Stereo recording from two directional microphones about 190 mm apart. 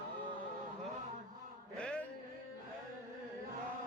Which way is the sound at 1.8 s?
5° left (ahead or behind).